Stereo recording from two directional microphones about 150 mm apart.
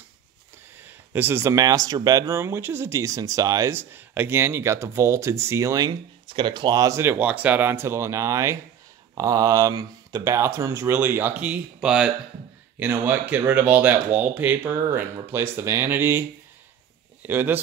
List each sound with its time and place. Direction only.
0.7 s speech: 15° right (ahead or behind)